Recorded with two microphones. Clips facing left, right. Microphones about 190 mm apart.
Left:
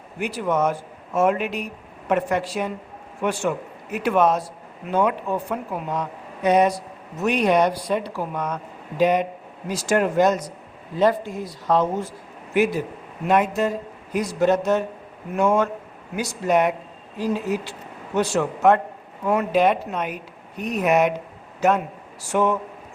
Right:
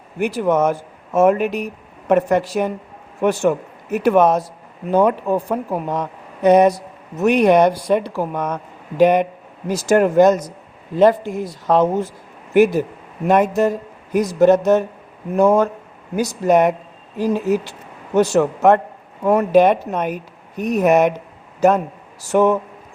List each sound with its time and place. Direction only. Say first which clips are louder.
0.3 s speech: right 5 dB; 50° right (ahead or behind)
13.2 s speech: right 5 dB; 45° right (ahead or behind)
22.3 s speech: right 6 dB; 45° right (ahead or behind)